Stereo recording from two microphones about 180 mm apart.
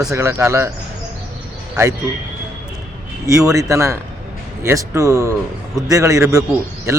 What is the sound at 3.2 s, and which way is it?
A man's voice, 20° right (ahead or behind).